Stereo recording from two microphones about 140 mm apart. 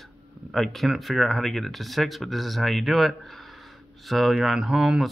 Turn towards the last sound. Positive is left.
turn(degrees=-5)  # may be behind; listen again after turning